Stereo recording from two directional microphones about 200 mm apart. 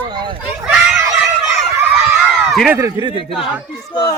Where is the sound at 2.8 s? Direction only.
15° right (ahead or behind).